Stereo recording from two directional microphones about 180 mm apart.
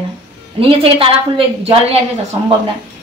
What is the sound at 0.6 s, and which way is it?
A woman's voice, 30° right (ahead or behind).